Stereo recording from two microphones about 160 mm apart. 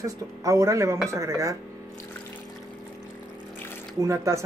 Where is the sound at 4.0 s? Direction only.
20° right (ahead or behind).